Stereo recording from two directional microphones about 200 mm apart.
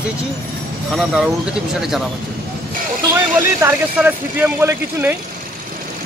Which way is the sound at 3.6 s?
10° right (ahead or behind).